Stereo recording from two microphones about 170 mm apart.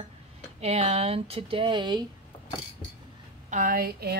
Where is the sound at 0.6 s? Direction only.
40° right (ahead or behind).